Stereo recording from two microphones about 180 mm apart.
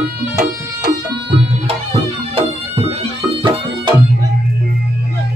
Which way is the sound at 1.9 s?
35° right (ahead or behind).